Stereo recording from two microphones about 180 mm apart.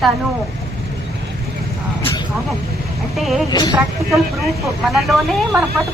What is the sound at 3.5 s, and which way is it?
Speech, 25° left (ahead or behind).